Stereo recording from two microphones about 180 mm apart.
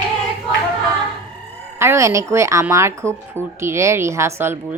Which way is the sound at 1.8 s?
15° right (ahead or behind).